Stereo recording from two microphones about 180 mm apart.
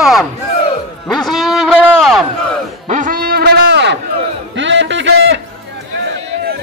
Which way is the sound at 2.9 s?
45° right (ahead or behind).